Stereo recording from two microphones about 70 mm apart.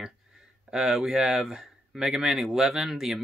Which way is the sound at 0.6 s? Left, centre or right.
Centre.